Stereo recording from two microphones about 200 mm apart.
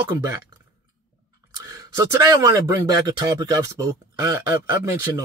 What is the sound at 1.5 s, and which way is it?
Speech, 15° right (ahead or behind).